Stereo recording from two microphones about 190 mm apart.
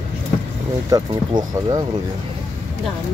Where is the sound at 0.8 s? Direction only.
20° right (ahead or behind).